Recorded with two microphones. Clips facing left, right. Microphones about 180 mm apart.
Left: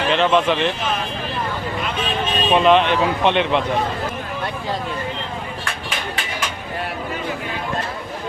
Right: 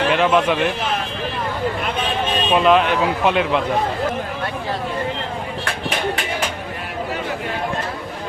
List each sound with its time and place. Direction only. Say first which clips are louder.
0.1 s speech: left 2 dB; 10° right (ahead or behind)
2.5 s speech: left 1 dB; 5° right (ahead or behind)